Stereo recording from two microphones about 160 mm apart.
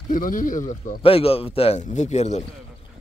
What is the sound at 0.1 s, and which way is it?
Speech, 55° left (ahead or behind).